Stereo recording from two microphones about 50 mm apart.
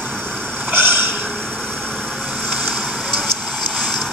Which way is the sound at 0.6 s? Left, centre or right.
Right.